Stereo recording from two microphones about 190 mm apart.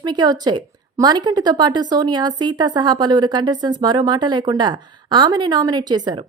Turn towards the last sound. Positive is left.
turn(degrees=-20)  # may be behind; listen again after turning